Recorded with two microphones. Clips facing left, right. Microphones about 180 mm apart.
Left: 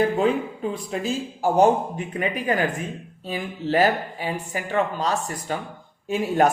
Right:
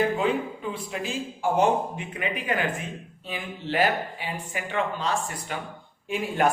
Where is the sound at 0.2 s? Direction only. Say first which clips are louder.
Left 4 dB; 40° left (ahead or behind).